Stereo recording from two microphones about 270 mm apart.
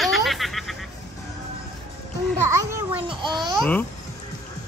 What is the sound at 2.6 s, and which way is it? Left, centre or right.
A child's voice, centre.